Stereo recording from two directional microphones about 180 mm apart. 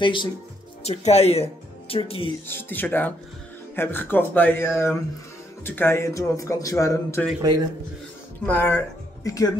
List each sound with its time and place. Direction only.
0.0 s speech: 25° left (ahead or behind)
2.4 s speech: 10° left (ahead or behind)
8.5 s speech: 10° left (ahead or behind)